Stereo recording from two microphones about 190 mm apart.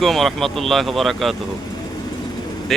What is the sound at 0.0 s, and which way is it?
Speech, centre (ahead or behind).